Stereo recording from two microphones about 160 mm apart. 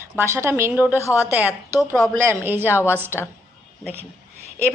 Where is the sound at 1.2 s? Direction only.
10° right (ahead or behind).